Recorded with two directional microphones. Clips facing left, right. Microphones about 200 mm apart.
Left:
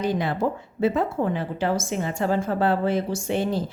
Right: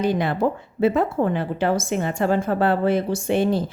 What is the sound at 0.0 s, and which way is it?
Speech, 65° right (ahead or behind).